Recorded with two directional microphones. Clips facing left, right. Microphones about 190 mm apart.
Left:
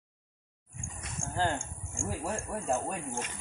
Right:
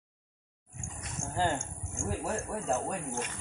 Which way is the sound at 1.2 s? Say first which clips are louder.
Right 1 dB; 25° right (ahead or behind).